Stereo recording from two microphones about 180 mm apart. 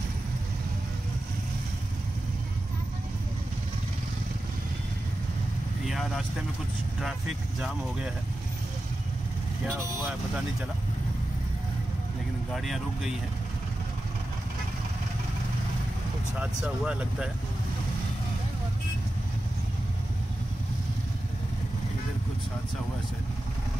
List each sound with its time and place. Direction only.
5.9 s vehicle: centre (ahead or behind)
12.5 s speech: centre (ahead or behind)
16.3 s speech: 5° right (ahead or behind)